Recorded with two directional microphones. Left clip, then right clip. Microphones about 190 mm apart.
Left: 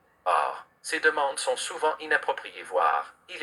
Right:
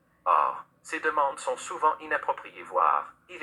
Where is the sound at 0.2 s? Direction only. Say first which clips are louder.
Right 1 dB; 40° left (ahead or behind).